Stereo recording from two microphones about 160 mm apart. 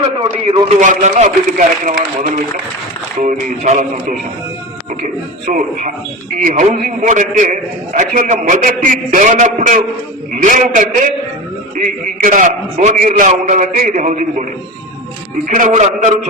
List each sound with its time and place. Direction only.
0.8 s a man's voice: 50° right (ahead or behind)
5.5 s a man's voice: 50° right (ahead or behind)
6.7 s a man's voice: 50° right (ahead or behind)
15.4 s a man's voice: 50° right (ahead or behind)